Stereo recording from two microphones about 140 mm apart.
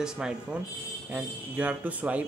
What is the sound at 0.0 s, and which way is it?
Speech, 5° right (ahead or behind).